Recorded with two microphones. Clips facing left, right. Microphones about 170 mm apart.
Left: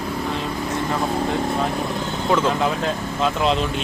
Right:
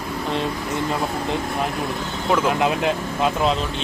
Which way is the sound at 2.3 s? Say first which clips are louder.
Right 1 dB; 10° right (ahead or behind).